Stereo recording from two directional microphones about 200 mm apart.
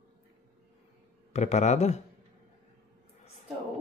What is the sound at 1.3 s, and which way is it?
Speech, 35° left (ahead or behind).